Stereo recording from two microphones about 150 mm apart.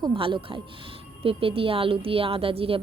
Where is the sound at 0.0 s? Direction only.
35° right (ahead or behind).